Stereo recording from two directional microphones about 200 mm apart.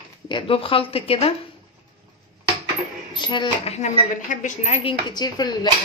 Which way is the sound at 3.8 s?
35° left (ahead or behind).